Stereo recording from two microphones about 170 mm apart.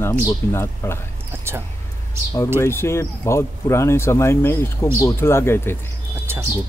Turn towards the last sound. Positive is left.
turn(degrees=-15)  # may be behind; listen again after turning